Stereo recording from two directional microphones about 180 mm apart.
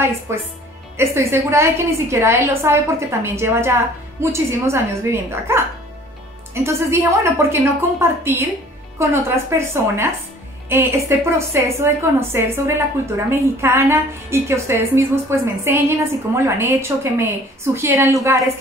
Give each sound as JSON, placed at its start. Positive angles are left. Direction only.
{"t": 0.3, "sound": "a woman's voice", "side_deg": -15}